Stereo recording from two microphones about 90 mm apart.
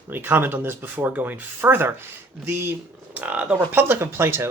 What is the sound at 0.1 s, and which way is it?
Speech, 25° right (ahead or behind).